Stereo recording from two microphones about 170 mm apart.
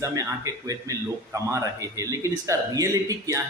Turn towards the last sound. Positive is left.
turn(degrees=-20)  # may be behind; listen again after turning